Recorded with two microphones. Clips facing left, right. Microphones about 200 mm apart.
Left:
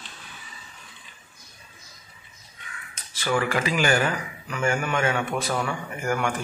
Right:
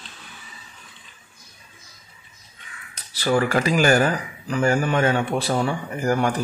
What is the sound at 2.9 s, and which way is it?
Speech, 35° right (ahead or behind).